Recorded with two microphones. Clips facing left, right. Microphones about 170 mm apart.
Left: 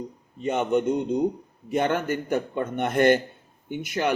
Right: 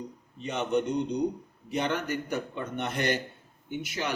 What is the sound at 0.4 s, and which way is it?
Speech, 50° left (ahead or behind).